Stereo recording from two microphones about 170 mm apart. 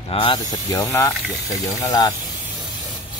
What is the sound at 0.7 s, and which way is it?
Speech, 15° left (ahead or behind).